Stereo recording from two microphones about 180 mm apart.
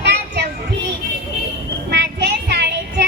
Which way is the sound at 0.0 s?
70° right (ahead or behind).